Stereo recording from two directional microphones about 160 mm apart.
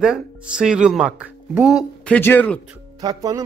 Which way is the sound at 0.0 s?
5° right (ahead or behind).